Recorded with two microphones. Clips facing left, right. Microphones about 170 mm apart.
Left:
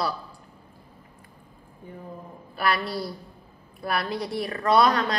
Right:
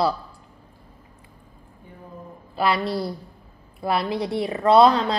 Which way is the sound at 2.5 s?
25° right (ahead or behind).